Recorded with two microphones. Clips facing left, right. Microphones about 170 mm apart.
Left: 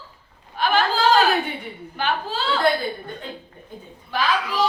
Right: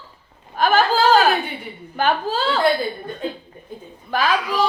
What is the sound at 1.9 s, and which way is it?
Speech, 45° right (ahead or behind).